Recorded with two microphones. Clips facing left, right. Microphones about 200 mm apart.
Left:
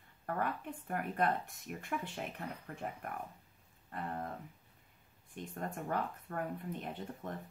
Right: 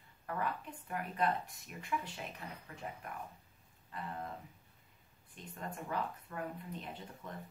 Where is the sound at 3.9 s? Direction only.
50° left (ahead or behind).